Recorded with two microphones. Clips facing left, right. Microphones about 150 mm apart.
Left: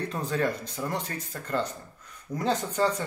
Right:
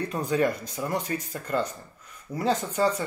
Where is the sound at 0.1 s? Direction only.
10° right (ahead or behind).